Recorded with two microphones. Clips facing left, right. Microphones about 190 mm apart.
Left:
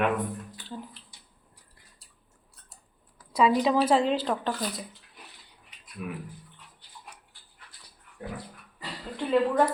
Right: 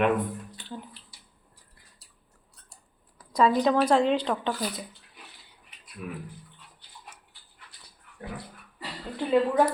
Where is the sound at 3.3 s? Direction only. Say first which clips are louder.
Right 1 dB; 5° left (ahead or behind).